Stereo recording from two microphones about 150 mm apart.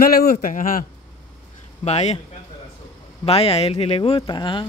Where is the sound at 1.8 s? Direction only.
45° left (ahead or behind).